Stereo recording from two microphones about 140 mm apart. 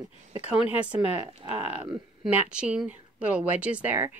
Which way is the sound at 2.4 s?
5° right (ahead or behind).